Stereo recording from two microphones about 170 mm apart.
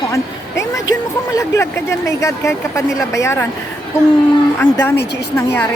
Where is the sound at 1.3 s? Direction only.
20° left (ahead or behind).